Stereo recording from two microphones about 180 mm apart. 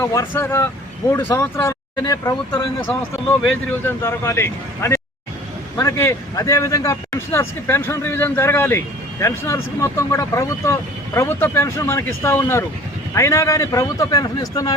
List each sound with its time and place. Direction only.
0.0 s speech: 15° left (ahead or behind)